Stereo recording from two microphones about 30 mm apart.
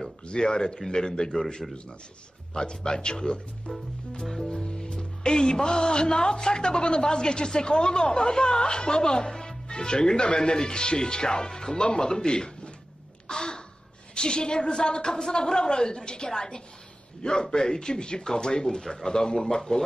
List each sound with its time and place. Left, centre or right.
0.2 s music: left
2.5 s music: left
4.5 s music: left
13.3 s caw: left
14.1 s music: left
18.8 s music: centre